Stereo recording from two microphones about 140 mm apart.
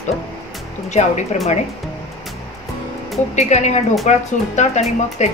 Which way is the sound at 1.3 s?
60° left (ahead or behind).